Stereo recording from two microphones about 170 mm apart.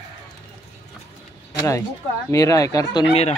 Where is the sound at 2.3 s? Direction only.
20° left (ahead or behind).